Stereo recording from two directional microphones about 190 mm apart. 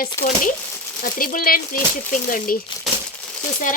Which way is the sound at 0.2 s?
15° left (ahead or behind).